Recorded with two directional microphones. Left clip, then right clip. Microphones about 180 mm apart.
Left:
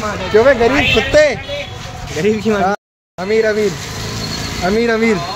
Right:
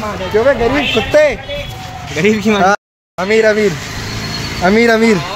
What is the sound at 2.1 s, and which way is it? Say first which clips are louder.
Speech: right 2 dB; 55° right (ahead or behind).